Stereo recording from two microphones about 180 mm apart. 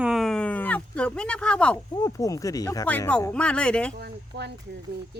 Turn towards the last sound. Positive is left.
turn(degrees=-65)  # may be behind; listen again after turning